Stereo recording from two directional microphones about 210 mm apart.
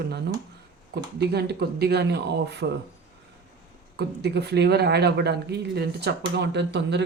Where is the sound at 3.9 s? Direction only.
50° right (ahead or behind).